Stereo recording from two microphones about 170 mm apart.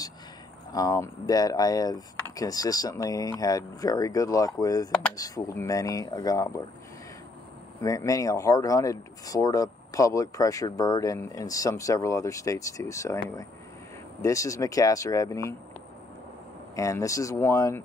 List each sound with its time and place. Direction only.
0.7 s speech: 20° left (ahead or behind)
7.8 s speech: 20° left (ahead or behind)
16.7 s speech: 20° left (ahead or behind)